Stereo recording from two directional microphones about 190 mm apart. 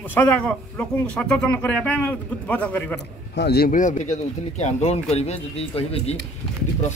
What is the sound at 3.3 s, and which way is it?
Speech, 55° left (ahead or behind).